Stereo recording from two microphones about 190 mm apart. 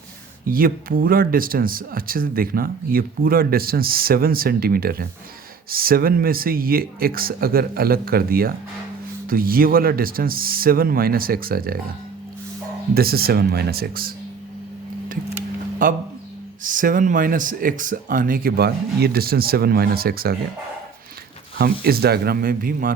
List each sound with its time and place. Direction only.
0.4 s speech: 50° right (ahead or behind)
12.9 s speech: 55° right (ahead or behind)
15.8 s speech: 45° right (ahead or behind)
21.6 s speech: 55° right (ahead or behind)